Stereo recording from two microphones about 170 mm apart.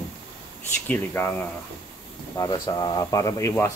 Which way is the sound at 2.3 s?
20° left (ahead or behind).